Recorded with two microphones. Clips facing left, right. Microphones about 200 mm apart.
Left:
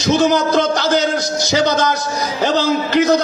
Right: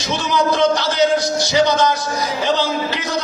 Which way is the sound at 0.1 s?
45° left (ahead or behind).